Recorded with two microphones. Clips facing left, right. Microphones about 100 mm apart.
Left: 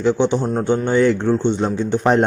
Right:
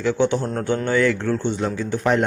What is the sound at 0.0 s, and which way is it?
A man's voice, 20° left (ahead or behind).